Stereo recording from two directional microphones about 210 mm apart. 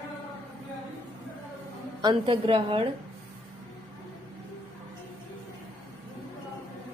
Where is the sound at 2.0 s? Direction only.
25° right (ahead or behind).